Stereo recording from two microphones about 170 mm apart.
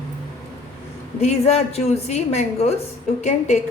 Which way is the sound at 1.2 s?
40° left (ahead or behind).